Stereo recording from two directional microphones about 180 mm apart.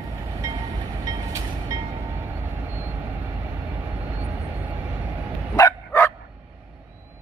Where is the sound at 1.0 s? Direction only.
20° right (ahead or behind).